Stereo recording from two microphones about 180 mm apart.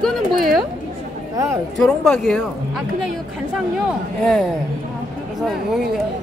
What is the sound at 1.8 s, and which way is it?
A man's voice, 5° left (ahead or behind).